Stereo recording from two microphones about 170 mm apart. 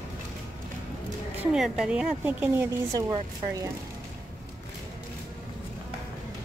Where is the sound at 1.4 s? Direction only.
5° right (ahead or behind).